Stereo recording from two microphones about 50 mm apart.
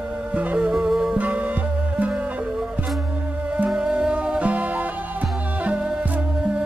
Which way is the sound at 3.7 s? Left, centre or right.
Centre.